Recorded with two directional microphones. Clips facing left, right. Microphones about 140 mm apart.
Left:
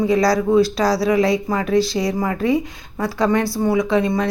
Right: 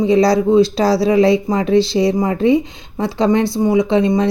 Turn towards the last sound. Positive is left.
turn(degrees=-25)  # may be behind; listen again after turning